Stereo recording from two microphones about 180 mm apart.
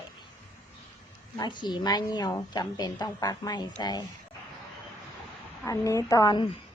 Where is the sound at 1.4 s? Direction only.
25° left (ahead or behind).